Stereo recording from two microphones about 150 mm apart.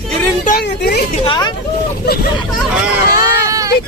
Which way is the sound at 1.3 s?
30° left (ahead or behind).